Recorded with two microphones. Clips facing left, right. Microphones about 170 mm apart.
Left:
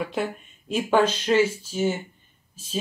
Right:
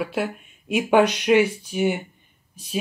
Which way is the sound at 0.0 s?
5° right (ahead or behind).